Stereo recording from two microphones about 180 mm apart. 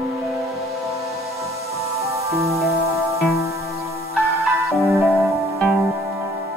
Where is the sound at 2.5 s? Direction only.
Centre (ahead or behind).